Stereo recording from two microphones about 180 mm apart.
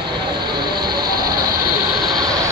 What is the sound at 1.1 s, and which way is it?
Vehicle, 55° right (ahead or behind).